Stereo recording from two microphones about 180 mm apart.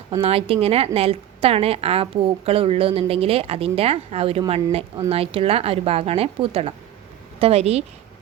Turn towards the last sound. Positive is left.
turn(degrees=-35)  # may be behind; listen again after turning